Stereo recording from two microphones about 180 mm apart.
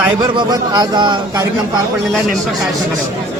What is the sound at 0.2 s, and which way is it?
A man's voice, 25° right (ahead or behind).